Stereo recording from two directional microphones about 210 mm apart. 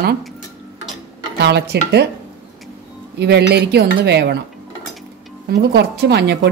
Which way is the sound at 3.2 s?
55° right (ahead or behind).